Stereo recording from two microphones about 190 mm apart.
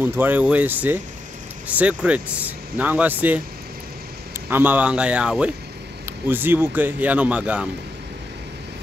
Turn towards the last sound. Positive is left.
turn(degrees=-5)  # may be behind; listen again after turning